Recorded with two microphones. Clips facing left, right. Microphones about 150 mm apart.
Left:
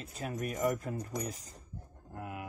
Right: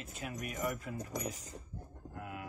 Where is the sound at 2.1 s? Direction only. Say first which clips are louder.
Left 3 dB; 25° left (ahead or behind).